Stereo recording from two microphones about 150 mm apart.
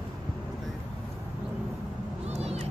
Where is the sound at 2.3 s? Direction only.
45° right (ahead or behind).